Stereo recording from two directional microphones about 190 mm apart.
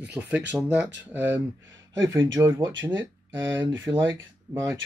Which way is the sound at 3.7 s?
20° right (ahead or behind).